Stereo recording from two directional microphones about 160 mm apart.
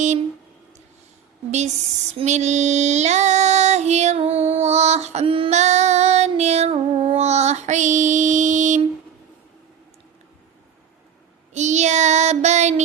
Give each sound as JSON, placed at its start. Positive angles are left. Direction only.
{"t": 1.5, "sound": "speech", "side_deg": -45}
{"t": 2.1, "sound": "female singing", "side_deg": -45}
{"t": 11.5, "sound": "child singing", "side_deg": -45}